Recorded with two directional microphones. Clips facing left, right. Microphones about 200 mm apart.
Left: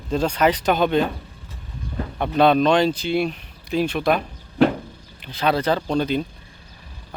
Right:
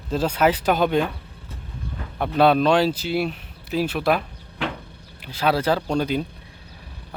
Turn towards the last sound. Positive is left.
turn(degrees=-10)  # may be behind; listen again after turning